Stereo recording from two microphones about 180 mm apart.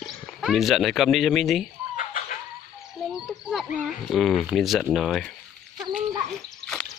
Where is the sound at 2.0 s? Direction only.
45° left (ahead or behind).